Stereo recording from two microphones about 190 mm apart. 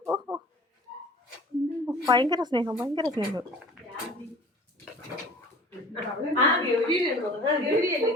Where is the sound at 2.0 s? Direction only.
25° right (ahead or behind).